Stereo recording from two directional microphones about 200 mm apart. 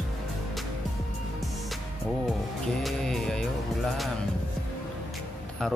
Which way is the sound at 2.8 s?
Centre (ahead or behind).